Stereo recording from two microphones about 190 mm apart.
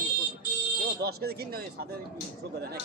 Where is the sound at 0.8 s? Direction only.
55° right (ahead or behind).